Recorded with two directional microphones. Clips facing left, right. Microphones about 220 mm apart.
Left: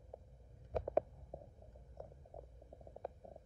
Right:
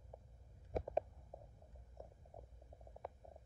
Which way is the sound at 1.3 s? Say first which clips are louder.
Left 5 dB; 30° left (ahead or behind).